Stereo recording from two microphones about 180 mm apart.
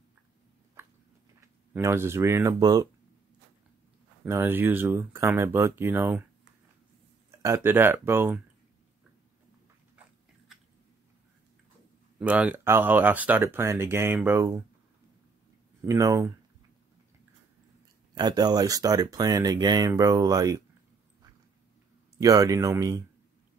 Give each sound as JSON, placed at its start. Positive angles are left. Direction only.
{"t": 1.4, "sound": "speech", "side_deg": -15}
{"t": 4.2, "sound": "speech", "side_deg": -10}
{"t": 7.2, "sound": "speech", "side_deg": -15}
{"t": 10.5, "sound": "a sound", "side_deg": 0}
{"t": 12.2, "sound": "speech", "side_deg": -10}
{"t": 15.8, "sound": "speech", "side_deg": -15}
{"t": 18.1, "sound": "speech", "side_deg": -20}
{"t": 22.2, "sound": "speech", "side_deg": -20}